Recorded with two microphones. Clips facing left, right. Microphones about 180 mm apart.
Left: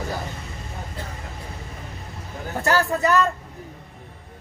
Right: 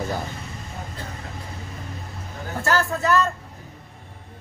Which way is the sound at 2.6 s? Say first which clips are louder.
Left 2 dB; 15° left (ahead or behind).